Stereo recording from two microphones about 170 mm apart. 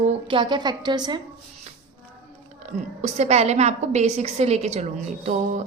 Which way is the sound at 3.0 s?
40° right (ahead or behind).